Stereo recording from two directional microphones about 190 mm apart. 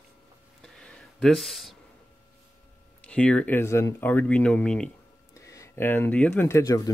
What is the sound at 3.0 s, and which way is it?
Speech, 5° left (ahead or behind).